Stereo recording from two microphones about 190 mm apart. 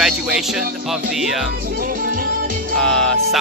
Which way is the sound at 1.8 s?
50° right (ahead or behind).